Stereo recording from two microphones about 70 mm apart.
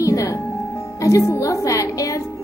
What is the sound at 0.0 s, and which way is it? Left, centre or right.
Music, left.